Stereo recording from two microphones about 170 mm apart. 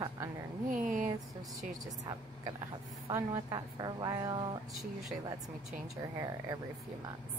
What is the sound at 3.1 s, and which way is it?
A woman's voice, 15° right (ahead or behind).